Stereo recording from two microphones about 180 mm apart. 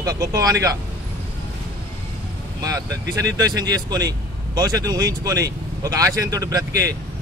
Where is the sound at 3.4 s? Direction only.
20° right (ahead or behind).